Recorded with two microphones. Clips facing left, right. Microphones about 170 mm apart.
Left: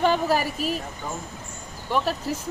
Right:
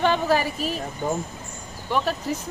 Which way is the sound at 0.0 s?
5° left (ahead or behind).